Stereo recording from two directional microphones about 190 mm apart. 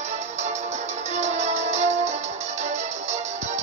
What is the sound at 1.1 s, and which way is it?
Music, 35° right (ahead or behind).